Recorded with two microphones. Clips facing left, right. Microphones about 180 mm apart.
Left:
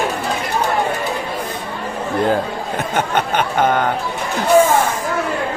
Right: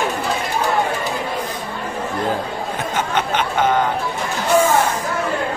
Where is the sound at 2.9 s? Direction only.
55° left (ahead or behind).